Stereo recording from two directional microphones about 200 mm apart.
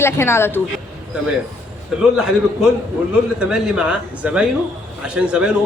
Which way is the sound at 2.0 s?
5° right (ahead or behind).